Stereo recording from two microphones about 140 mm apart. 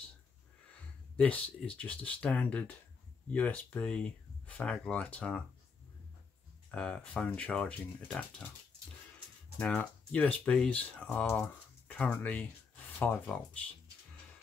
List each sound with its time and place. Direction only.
1.1 s speech: 10° left (ahead or behind)
6.7 s speech: 5° left (ahead or behind)
9.6 s speech: 10° left (ahead or behind)